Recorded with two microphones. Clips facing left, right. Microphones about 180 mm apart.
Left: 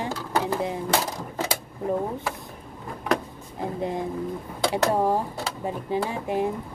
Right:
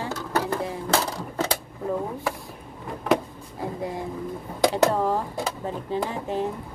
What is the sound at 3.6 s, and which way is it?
Speech, 20° left (ahead or behind).